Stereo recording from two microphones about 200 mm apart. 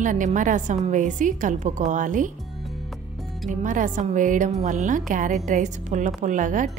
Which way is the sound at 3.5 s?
40° right (ahead or behind).